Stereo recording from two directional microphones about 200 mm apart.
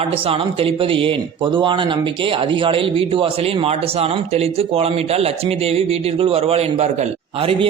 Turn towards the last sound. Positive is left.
turn(degrees=-30)  # may be behind; listen again after turning